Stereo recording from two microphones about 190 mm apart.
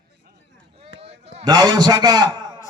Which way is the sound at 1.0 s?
35° right (ahead or behind).